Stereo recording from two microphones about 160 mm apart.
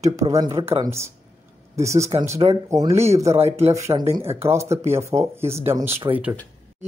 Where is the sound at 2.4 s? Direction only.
35° right (ahead or behind).